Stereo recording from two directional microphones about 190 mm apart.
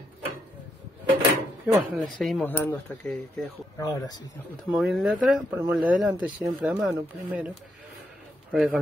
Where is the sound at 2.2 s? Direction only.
5° left (ahead or behind).